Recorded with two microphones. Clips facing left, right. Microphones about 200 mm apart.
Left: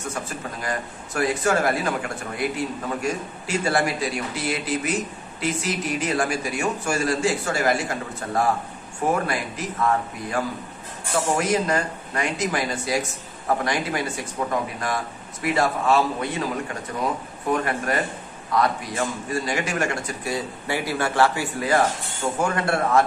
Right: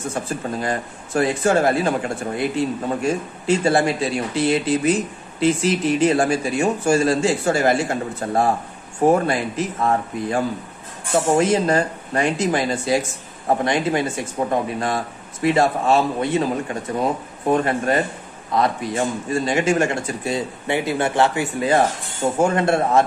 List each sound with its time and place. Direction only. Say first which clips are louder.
0.1 s speech: right 6 dB; 30° right (ahead or behind)
3.4 s speech: right 6 dB; 25° right (ahead or behind)
17.5 s speech: right 5 dB; 25° right (ahead or behind)